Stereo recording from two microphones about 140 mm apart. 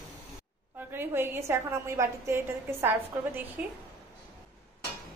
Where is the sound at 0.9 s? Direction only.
15° right (ahead or behind).